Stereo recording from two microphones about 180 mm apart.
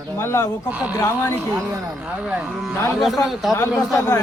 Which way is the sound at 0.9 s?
20° left (ahead or behind).